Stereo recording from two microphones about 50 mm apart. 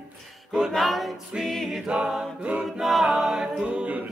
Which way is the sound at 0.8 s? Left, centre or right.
Centre.